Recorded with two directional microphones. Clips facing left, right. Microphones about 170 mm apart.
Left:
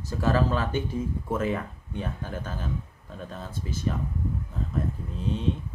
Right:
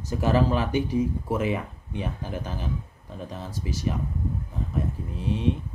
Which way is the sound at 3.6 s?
15° right (ahead or behind).